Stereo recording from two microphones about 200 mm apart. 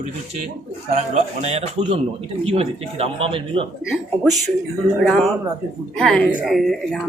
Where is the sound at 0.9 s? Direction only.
35° right (ahead or behind).